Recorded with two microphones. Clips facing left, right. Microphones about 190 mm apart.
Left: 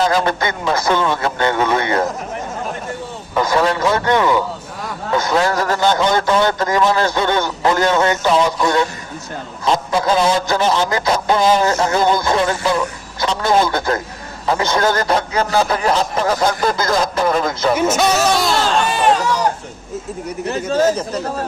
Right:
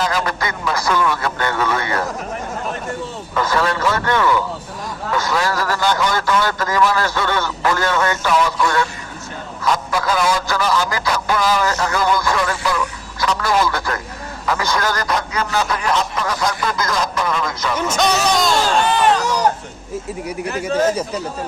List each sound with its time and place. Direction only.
0.0 s a man's voice: 30° left (ahead or behind)
3.3 s a man's voice: 20° left (ahead or behind); by 17.7 s 35° left (ahead or behind)
17.7 s speech: 5° left (ahead or behind)
20.5 s a man's voice: 30° left (ahead or behind)